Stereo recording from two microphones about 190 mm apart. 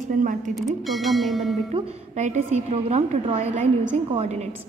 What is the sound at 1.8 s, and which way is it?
A woman's voice, 35° right (ahead or behind).